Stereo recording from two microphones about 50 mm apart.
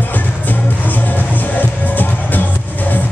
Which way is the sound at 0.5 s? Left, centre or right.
Left.